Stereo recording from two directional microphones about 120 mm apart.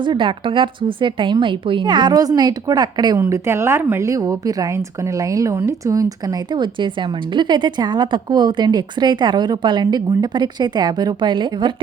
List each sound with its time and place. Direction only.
0.0 s speech: 45° right (ahead or behind)
3.2 s speech: 20° right (ahead or behind); by 11.7 s 40° right (ahead or behind)